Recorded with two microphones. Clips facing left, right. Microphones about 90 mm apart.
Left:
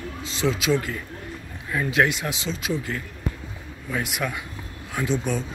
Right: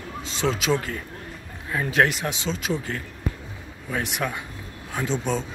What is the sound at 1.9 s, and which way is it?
Speech, 40° right (ahead or behind).